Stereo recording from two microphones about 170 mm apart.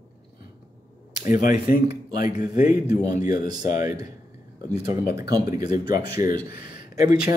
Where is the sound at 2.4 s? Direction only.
50° left (ahead or behind).